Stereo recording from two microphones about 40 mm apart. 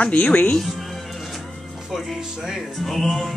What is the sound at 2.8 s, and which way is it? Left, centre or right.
Speech, centre.